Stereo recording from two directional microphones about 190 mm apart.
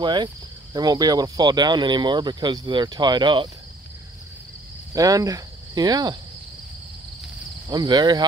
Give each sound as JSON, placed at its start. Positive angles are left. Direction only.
{"t": 0.0, "sound": "speech", "side_deg": -25}
{"t": 4.9, "sound": "cricket", "side_deg": -20}
{"t": 7.6, "sound": "speech", "side_deg": -20}